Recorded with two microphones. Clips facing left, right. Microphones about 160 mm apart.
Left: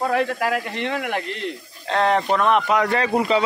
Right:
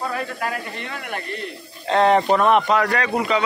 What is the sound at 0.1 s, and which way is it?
Speech, 75° left (ahead or behind).